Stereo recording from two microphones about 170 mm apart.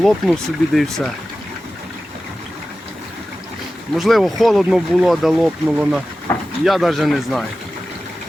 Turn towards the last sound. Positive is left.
turn(degrees=0)  # may be behind; listen again after turning